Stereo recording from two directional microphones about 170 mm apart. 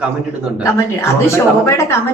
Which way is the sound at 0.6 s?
15° left (ahead or behind).